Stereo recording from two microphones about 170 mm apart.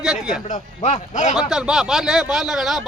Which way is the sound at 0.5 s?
40° left (ahead or behind).